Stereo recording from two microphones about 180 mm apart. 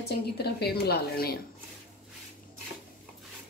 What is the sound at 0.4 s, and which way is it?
Speech, 60° left (ahead or behind).